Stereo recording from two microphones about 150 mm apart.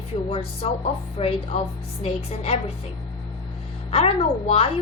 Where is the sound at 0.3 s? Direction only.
40° left (ahead or behind).